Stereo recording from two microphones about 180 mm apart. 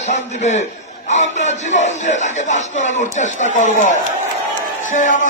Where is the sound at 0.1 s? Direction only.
40° left (ahead or behind).